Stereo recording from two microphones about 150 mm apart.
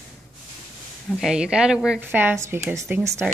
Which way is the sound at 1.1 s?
5° right (ahead or behind).